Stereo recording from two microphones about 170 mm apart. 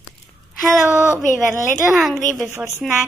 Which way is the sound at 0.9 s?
15° right (ahead or behind).